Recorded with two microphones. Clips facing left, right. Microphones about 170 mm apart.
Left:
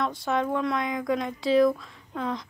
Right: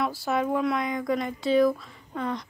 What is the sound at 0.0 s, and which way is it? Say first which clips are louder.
Speech: even; 5° right (ahead or behind).